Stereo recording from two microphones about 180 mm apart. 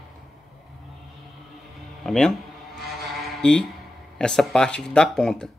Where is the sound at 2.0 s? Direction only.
Centre (ahead or behind).